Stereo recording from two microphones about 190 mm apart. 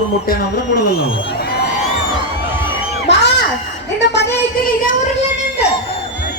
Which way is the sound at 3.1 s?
65° left (ahead or behind).